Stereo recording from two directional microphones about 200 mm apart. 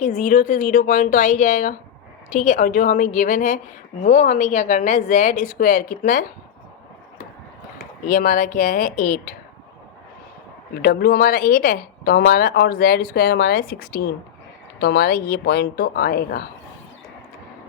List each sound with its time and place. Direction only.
0.0 s speech: 40° left (ahead or behind)
8.0 s a woman's voice: 45° left (ahead or behind)
10.8 s a woman's voice: 50° left (ahead or behind)